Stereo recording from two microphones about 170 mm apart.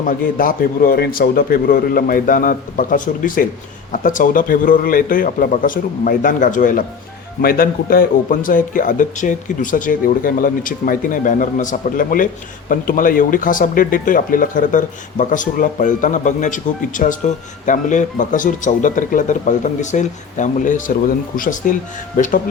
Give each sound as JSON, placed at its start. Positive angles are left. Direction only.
{"t": 0.0, "sound": "a man's voice", "side_deg": 55}